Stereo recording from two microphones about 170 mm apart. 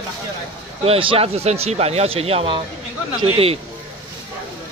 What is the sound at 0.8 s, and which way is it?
Speech, 35° right (ahead or behind).